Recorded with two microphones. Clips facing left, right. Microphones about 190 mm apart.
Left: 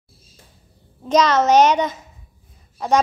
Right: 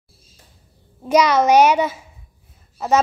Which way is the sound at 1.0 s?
10° right (ahead or behind).